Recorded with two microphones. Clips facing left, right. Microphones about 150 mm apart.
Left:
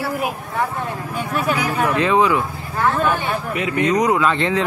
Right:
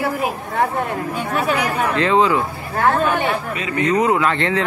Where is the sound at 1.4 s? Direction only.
10° left (ahead or behind).